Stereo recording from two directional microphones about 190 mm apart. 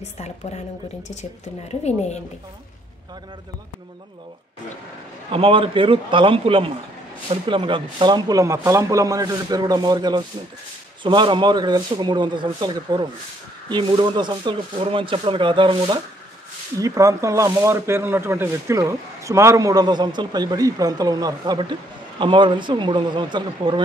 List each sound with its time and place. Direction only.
1.9 s a woman's voice: 35° left (ahead or behind)
5.3 s speech: 30° right (ahead or behind)